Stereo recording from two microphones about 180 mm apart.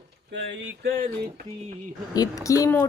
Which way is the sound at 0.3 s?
90° right.